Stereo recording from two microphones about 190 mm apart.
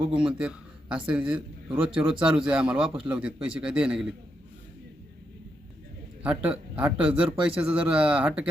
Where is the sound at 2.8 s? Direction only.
30° right (ahead or behind).